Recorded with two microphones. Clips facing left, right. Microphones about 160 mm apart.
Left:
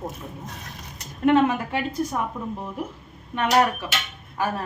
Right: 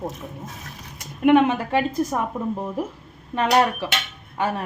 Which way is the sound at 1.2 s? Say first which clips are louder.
Right 3 dB; 15° right (ahead or behind).